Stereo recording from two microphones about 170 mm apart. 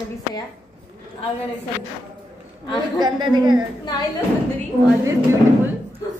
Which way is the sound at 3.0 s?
25° right (ahead or behind).